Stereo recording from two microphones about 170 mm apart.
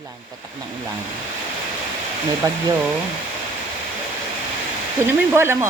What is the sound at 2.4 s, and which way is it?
Speech, 20° right (ahead or behind).